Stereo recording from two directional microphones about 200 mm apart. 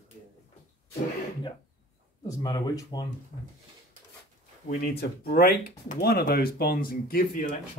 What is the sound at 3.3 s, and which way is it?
Speech, 35° left (ahead or behind).